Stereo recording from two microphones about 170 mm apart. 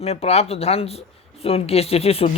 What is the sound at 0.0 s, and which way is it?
Speech, 40° left (ahead or behind).